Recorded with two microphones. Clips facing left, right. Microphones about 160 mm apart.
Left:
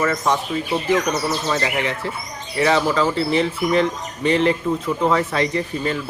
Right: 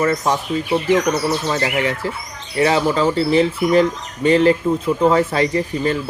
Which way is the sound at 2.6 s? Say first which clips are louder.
Right 2 dB; 35° right (ahead or behind).